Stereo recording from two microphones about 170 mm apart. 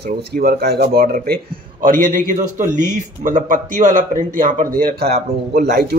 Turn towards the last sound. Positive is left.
turn(degrees=-70)  # may be behind; listen again after turning